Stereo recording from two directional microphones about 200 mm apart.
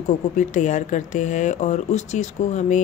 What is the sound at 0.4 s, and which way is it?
Speech, 35° left (ahead or behind).